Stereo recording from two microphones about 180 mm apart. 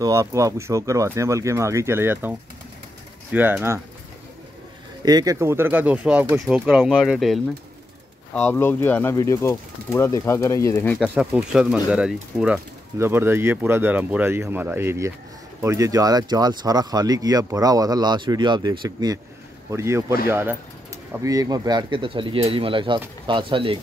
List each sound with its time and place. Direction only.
0.0 s speech: 15° right (ahead or behind)
5.0 s speech: 20° right (ahead or behind); by 11.0 s 15° left (ahead or behind)
11.0 s speech: 5° right (ahead or behind); by 23.8 s 30° right (ahead or behind)